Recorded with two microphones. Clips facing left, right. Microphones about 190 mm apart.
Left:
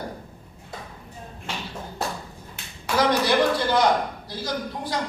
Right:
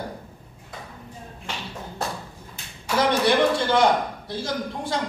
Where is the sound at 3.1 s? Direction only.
25° right (ahead or behind).